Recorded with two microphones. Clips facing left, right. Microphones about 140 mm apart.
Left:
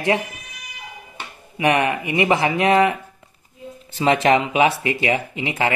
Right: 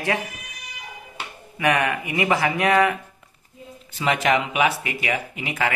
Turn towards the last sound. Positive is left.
turn(degrees=25)  # may be behind; listen again after turning